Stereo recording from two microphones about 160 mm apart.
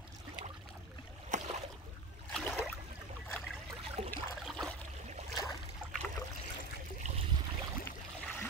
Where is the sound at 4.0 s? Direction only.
45° right (ahead or behind).